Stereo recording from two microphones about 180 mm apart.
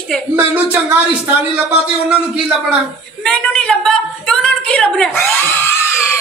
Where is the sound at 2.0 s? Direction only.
5° right (ahead or behind).